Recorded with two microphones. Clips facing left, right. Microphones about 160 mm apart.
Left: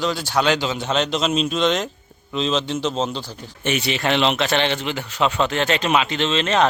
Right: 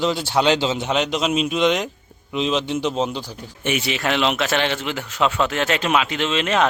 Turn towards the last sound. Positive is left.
turn(degrees=-10)  # may be behind; listen again after turning